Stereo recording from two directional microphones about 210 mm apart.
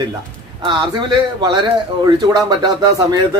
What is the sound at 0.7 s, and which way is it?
A man's voice, 20° right (ahead or behind).